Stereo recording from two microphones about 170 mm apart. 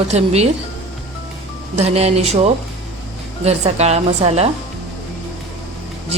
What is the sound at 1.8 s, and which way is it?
Speech, 40° right (ahead or behind).